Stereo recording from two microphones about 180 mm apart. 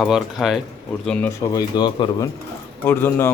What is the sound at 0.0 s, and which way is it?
Speech, centre (ahead or behind).